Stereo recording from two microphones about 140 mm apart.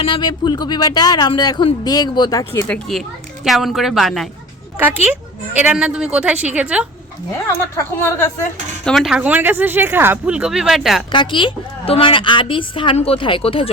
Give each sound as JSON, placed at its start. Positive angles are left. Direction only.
{"t": 0.0, "sound": "speech", "side_deg": 35}
{"t": 2.6, "sound": "a woman's voice", "side_deg": 5}
{"t": 5.5, "sound": "speech", "side_deg": -10}
{"t": 7.4, "sound": "speech", "side_deg": 20}
{"t": 8.8, "sound": "speech", "side_deg": 5}
{"t": 11.1, "sound": "a woman's voice", "side_deg": 35}